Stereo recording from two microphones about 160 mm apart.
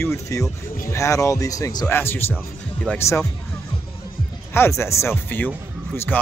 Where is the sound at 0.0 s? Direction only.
20° left (ahead or behind).